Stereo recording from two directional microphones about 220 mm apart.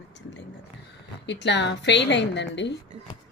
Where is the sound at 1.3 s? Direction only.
55° left (ahead or behind).